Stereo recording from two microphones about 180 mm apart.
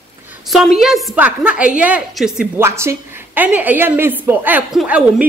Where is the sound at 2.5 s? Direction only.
15° right (ahead or behind).